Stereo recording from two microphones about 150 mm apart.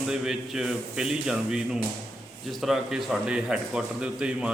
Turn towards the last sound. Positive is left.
turn(degrees=-5)  # may be behind; listen again after turning